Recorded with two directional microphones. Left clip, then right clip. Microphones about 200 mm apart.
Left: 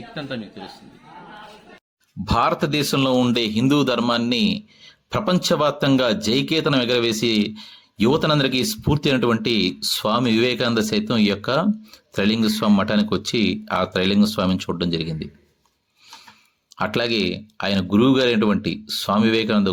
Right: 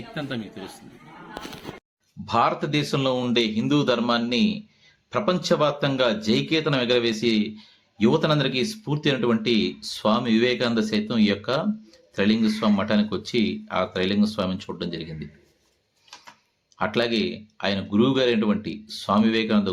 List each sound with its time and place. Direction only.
0.1 s a man's voice: centre (ahead or behind)
2.2 s a man's voice: 40° left (ahead or behind)
16.7 s a man's voice: 40° left (ahead or behind)